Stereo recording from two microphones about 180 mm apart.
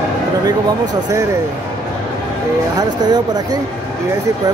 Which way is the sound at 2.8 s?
20° right (ahead or behind).